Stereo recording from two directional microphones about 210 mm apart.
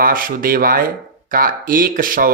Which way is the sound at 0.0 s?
40° right (ahead or behind).